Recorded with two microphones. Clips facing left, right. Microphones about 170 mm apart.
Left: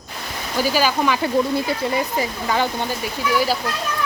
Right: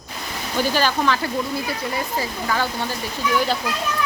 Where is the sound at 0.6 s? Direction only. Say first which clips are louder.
Left 1 dB; 10° left (ahead or behind).